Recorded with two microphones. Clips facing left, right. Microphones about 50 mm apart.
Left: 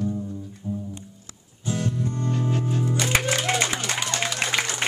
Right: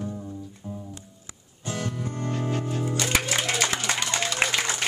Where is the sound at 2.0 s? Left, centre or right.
Right.